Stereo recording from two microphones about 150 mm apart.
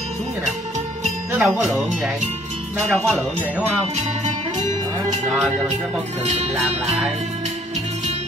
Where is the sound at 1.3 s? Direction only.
10° right (ahead or behind).